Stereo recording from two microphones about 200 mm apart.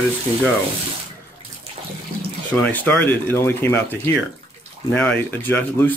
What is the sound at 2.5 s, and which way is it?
Speech, 10° left (ahead or behind).